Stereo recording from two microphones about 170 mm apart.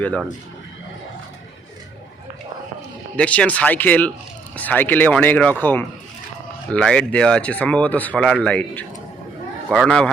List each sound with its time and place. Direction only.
0.0 s speech: 5° left (ahead or behind)
3.2 s a man's voice: 10° left (ahead or behind)